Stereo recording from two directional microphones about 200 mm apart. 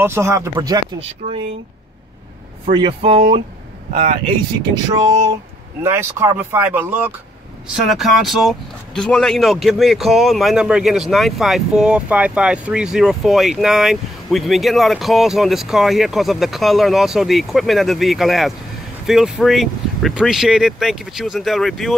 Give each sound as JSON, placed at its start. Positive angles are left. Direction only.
{"t": 0.0, "sound": "speech", "side_deg": -15}
{"t": 2.6, "sound": "speech", "side_deg": -30}
{"t": 3.9, "sound": "speech", "side_deg": -45}
{"t": 4.7, "sound": "speech", "side_deg": -20}